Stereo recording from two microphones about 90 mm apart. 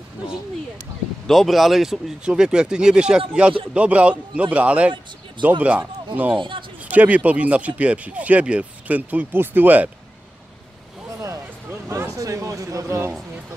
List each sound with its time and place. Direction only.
1.2 s speech: centre (ahead or behind); by 5.8 s 15° right (ahead or behind)
6.9 s speech: 15° right (ahead or behind)
11.9 s a sound: 35° right (ahead or behind)